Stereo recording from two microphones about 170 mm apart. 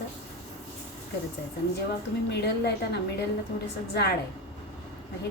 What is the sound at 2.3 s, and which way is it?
Speech, 80° left.